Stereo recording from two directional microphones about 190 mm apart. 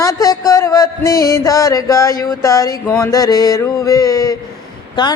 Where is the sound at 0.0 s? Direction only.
20° left (ahead or behind).